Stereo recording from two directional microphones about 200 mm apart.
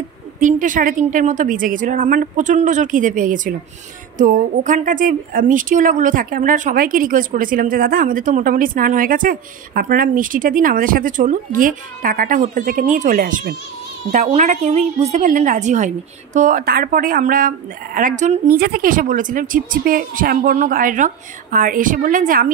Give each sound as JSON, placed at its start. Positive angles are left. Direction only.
{"t": 0.4, "sound": "a woman's voice", "side_deg": -40}
{"t": 18.6, "sound": "a woman's voice", "side_deg": -45}